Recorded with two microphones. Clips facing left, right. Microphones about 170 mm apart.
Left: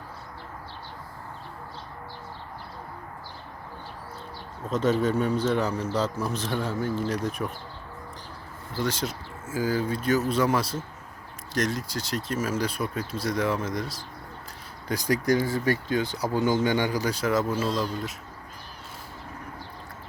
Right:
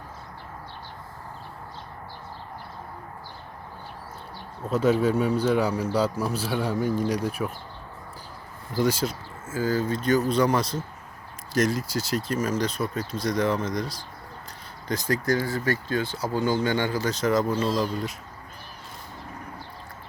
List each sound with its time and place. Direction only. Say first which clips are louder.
4.7 s a man's voice: right 2 dB; 10° right (ahead or behind)
8.7 s a man's voice: right 5 dB; 10° right (ahead or behind)
9.5 s speech: right 1 dB; 10° left (ahead or behind)
14.8 s speech: left 1 dB; 15° left (ahead or behind)